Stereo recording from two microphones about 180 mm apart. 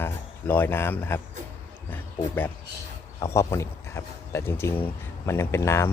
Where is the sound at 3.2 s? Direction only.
15° left (ahead or behind).